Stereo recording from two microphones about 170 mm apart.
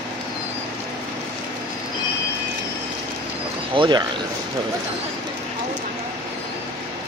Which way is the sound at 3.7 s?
30° right (ahead or behind).